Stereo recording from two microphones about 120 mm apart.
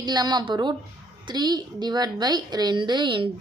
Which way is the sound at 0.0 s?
35° right (ahead or behind).